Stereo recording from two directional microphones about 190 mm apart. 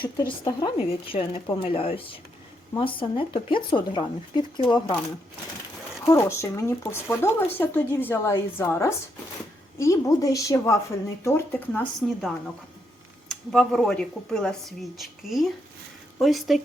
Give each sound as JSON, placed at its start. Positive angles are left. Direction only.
{"t": 0.2, "sound": "speech", "side_deg": 25}
{"t": 6.1, "sound": "speech", "side_deg": 15}